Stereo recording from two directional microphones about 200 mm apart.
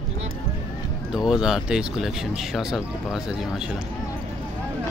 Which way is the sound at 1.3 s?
5° right (ahead or behind).